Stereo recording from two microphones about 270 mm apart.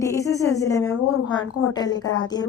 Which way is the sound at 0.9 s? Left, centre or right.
Left.